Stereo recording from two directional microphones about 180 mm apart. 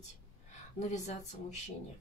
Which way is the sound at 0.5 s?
40° left (ahead or behind).